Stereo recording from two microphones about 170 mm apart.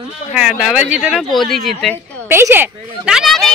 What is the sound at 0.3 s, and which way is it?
Speech, 5° right (ahead or behind).